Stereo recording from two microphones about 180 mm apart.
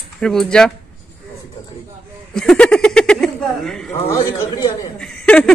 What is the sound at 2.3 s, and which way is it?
Speech, 5° left (ahead or behind).